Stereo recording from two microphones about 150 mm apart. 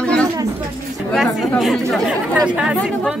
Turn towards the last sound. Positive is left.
turn(degrees=-5)  # may be behind; listen again after turning